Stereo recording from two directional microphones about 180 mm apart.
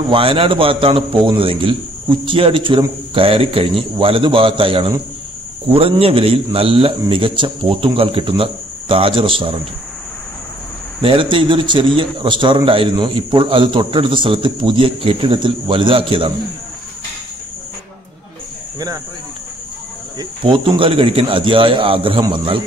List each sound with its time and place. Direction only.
0.1 s a man's voice: 30° right (ahead or behind)
11.0 s a man's voice: 30° right (ahead or behind)
20.2 s a man's voice: 30° right (ahead or behind)